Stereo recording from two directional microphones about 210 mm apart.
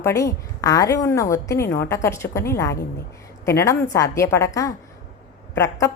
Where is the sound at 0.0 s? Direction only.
15° left (ahead or behind).